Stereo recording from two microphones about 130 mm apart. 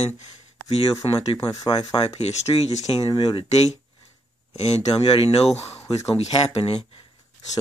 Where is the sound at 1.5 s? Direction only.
30° left (ahead or behind).